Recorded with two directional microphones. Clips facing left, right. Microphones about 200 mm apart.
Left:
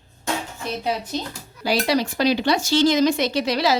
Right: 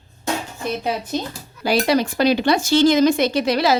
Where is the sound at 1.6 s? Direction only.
55° right (ahead or behind).